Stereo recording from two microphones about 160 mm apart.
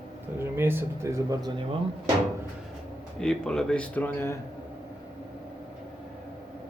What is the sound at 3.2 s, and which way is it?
Speech, 5° left (ahead or behind).